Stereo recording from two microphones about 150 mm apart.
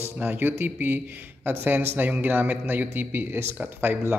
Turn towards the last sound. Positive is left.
turn(degrees=-15)  # may be behind; listen again after turning